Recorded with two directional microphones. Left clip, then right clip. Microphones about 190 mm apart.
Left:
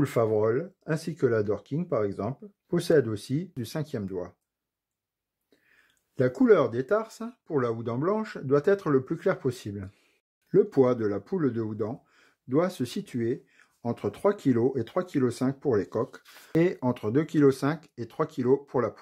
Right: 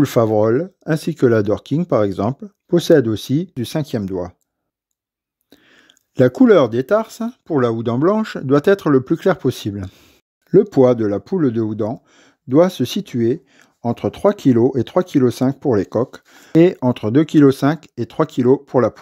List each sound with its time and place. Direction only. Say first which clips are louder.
0.0 s speech: right 10 dB; 40° right (ahead or behind)
5.7 s speech: right 12 dB; 40° right (ahead or behind)